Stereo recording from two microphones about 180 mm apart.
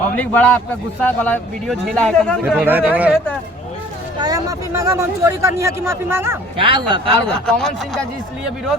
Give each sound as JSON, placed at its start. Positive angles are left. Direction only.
{"t": 0.2, "sound": "a man's voice", "side_deg": 10}
{"t": 2.4, "sound": "speech", "side_deg": -10}
{"t": 4.2, "sound": "speech", "side_deg": -20}
{"t": 6.6, "sound": "a man's voice", "side_deg": -30}
{"t": 7.3, "sound": "speech", "side_deg": 5}